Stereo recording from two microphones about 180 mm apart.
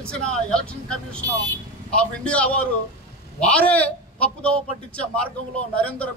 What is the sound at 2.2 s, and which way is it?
A man's voice, 5° left (ahead or behind).